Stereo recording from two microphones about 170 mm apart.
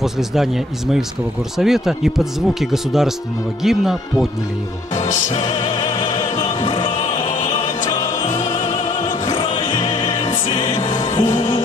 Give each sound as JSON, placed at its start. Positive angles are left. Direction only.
{"t": 0.0, "sound": "speech", "side_deg": 0}
{"t": 1.6, "sound": "speech", "side_deg": 0}
{"t": 4.9, "sound": "music", "side_deg": 40}
{"t": 5.9, "sound": "opera", "side_deg": 25}
{"t": 6.6, "sound": "music", "side_deg": 30}
{"t": 8.3, "sound": "opera", "side_deg": 40}
{"t": 8.6, "sound": "music", "side_deg": 25}